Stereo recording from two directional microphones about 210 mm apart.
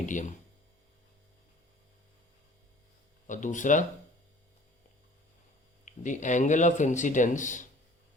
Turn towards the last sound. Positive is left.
turn(degrees=35)  # may be behind; listen again after turning